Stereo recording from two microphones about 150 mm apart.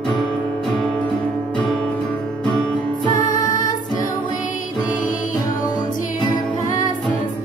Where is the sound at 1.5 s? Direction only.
5° left (ahead or behind).